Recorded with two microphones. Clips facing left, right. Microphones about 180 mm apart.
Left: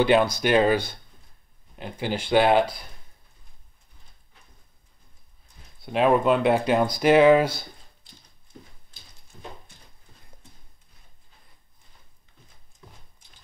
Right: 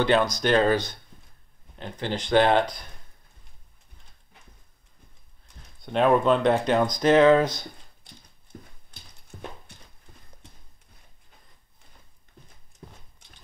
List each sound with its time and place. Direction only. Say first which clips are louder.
0.0 s speech: left 2 dB; 10° left (ahead or behind)
5.8 s speech: even; 5° left (ahead or behind)
9.3 s horse: right 3 dB; 55° right (ahead or behind)